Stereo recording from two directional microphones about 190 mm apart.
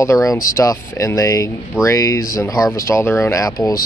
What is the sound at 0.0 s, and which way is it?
Speech, 15° left (ahead or behind).